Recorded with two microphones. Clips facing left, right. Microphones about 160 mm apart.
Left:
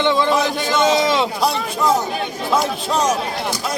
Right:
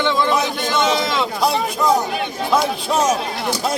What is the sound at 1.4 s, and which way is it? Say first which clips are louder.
A man's voice: right 1 dB; centre (ahead or behind).